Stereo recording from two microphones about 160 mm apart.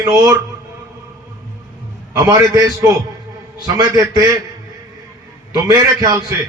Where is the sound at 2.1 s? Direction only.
20° right (ahead or behind).